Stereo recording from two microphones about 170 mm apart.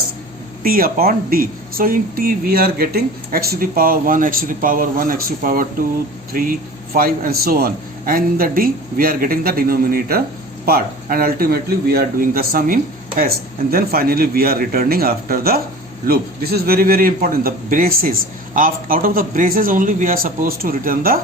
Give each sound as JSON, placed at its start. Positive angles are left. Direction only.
{"t": 0.6, "sound": "speech", "side_deg": -60}